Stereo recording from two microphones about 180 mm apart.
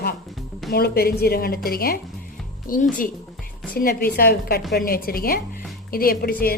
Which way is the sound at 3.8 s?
55° left (ahead or behind).